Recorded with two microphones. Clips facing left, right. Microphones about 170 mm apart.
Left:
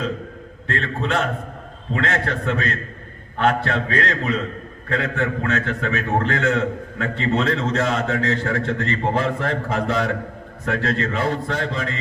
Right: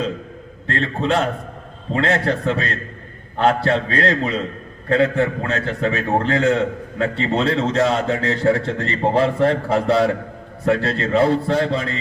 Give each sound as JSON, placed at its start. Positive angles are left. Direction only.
{"t": 0.7, "sound": "a man's voice", "side_deg": -30}